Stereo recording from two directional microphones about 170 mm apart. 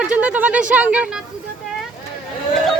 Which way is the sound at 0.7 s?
5° right (ahead or behind).